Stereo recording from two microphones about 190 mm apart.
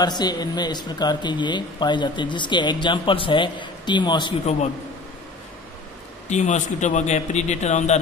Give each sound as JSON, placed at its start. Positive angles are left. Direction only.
{"t": 0.0, "sound": "speech", "side_deg": 20}
{"t": 6.2, "sound": "a man's voice", "side_deg": 35}